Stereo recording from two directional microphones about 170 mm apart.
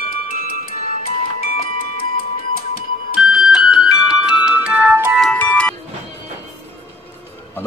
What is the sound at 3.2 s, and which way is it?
Music, 5° right (ahead or behind).